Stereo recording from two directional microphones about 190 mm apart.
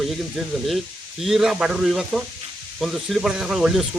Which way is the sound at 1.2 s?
Centre (ahead or behind).